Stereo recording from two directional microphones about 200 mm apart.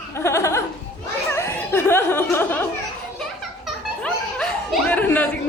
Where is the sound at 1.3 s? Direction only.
15° left (ahead or behind).